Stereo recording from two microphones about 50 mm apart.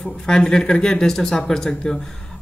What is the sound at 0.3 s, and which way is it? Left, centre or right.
Speech, centre.